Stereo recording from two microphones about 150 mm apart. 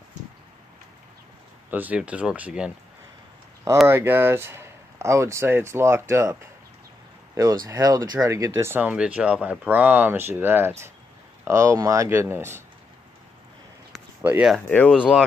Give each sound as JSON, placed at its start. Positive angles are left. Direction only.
{"t": 1.7, "sound": "speech", "side_deg": -10}
{"t": 3.8, "sound": "speech", "side_deg": -15}
{"t": 7.6, "sound": "speech", "side_deg": -25}
{"t": 14.2, "sound": "speech", "side_deg": -10}
{"t": 14.7, "sound": "speech", "side_deg": 10}